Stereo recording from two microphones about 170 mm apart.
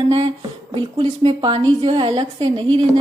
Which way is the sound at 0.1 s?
30° right (ahead or behind).